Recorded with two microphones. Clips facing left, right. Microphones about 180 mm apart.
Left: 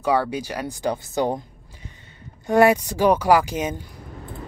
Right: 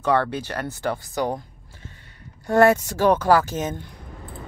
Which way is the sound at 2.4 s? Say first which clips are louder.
Even; 15° left (ahead or behind).